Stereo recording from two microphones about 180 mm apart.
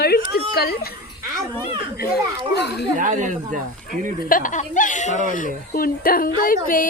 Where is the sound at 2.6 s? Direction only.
70° left (ahead or behind).